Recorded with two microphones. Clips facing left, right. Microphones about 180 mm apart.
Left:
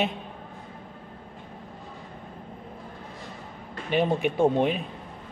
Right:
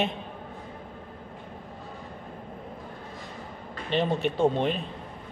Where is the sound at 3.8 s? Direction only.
10° left (ahead or behind).